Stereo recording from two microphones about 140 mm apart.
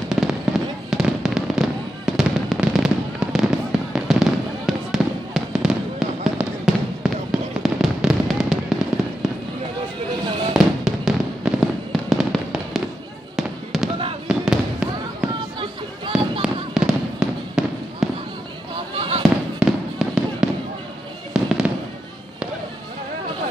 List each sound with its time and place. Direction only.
0.1 s fireworks: 5° right (ahead or behind)
10.5 s fireworks: 5° right (ahead or behind)
16.1 s fireworks: 5° right (ahead or behind)
18.9 s fireworks: 40° right (ahead or behind)
19.6 s fireworks: 5° right (ahead or behind)